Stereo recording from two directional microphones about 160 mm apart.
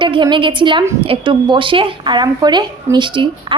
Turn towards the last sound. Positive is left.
turn(degrees=-30)  # may be behind; listen again after turning